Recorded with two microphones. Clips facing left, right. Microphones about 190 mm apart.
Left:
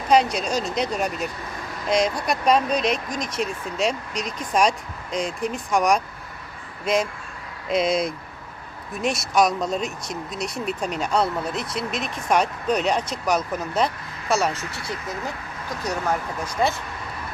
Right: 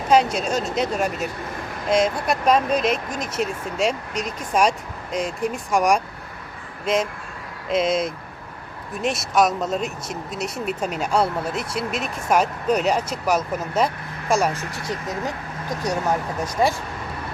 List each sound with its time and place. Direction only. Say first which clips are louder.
0.1 s speech: right 1 dB; 5° right (ahead or behind)
14.6 s speech: right 3 dB; 45° right (ahead or behind)